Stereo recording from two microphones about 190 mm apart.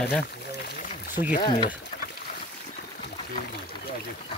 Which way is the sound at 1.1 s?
45° left (ahead or behind).